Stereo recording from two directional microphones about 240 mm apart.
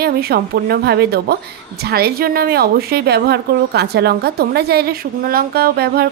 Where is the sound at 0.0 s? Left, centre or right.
Right.